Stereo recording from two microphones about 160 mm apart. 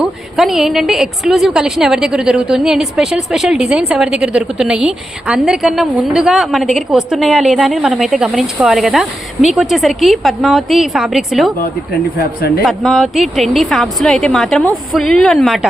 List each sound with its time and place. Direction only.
0.0 s a woman's voice: centre (ahead or behind)
12.1 s speech: 70° left (ahead or behind)
12.6 s a woman's voice: centre (ahead or behind)